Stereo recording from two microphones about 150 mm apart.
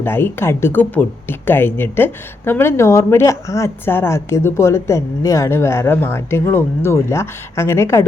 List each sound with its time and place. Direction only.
0.0 s speech: 15° left (ahead or behind)